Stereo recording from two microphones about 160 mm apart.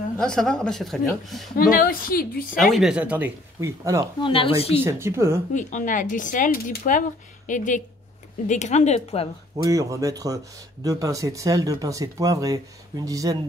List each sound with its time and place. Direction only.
0.2 s speech: 5° left (ahead or behind)
1.6 s a woman's voice: 65° left (ahead or behind)
2.6 s speech: centre (ahead or behind); by 4.1 s 20° right (ahead or behind)
4.2 s speech: 35° left (ahead or behind)
4.7 s speech: 15° right (ahead or behind)
5.5 s speech: 50° left (ahead or behind)
9.6 s speech: 20° right (ahead or behind)